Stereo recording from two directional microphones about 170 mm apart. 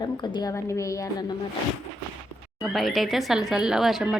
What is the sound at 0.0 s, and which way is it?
A woman's voice, 25° left (ahead or behind).